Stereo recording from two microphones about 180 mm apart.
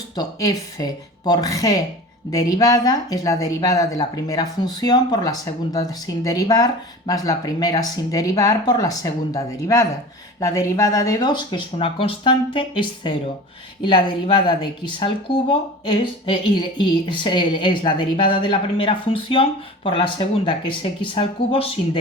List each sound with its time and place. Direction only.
0.2 s speech: 20° left (ahead or behind)